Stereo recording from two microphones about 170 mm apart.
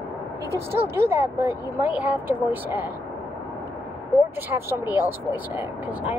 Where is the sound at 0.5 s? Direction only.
15° right (ahead or behind).